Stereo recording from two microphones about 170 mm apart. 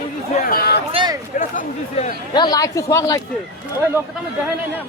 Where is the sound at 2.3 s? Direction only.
25° left (ahead or behind).